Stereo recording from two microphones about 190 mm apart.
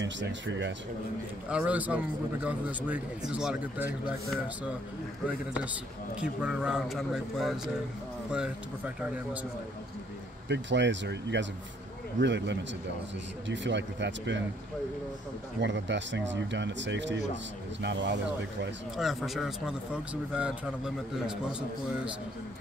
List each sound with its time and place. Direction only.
0.0 s speech: 75° right (ahead or behind)
1.5 s speech: 5° right (ahead or behind)
6.1 s speech: 5° right (ahead or behind)
10.5 s speech: 70° right (ahead or behind)
15.6 s speech: 70° right (ahead or behind)
18.9 s speech: centre (ahead or behind)